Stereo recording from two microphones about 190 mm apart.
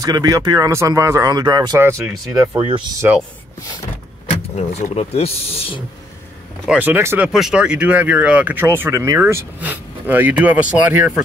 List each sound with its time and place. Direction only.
0.0 s speech: 20° right (ahead or behind)
4.3 s speech: 35° left (ahead or behind)
6.7 s speech: 10° right (ahead or behind)